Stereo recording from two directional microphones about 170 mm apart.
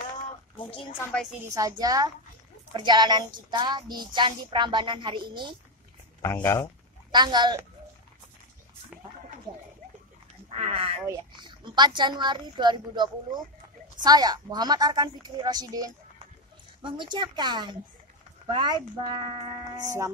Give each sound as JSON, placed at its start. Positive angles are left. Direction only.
{"t": 1.5, "sound": "a woman's voice", "side_deg": -20}
{"t": 6.2, "sound": "speech", "side_deg": 15}
{"t": 7.1, "sound": "a woman's voice", "side_deg": -25}
{"t": 10.6, "sound": "a woman's voice", "side_deg": -35}